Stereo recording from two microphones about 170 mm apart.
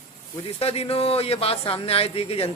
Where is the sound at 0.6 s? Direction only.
35° left (ahead or behind).